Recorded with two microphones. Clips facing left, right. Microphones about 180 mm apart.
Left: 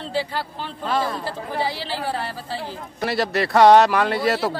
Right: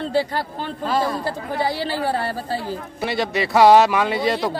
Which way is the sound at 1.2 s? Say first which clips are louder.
Right 2 dB; 50° right (ahead or behind).